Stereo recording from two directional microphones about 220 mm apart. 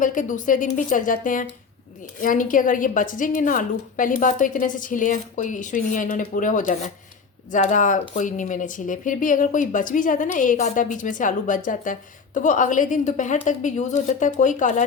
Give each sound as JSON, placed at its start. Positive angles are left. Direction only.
{"t": 0.0, "sound": "speech", "side_deg": 35}